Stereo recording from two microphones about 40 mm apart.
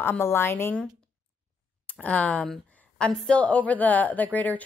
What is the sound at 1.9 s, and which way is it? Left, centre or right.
A woman's voice, left.